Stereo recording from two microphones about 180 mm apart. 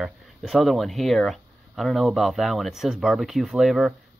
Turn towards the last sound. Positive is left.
turn(degrees=0)  # may be behind; listen again after turning